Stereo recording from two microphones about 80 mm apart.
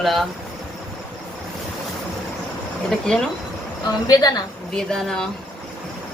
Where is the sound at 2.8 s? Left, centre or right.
Centre.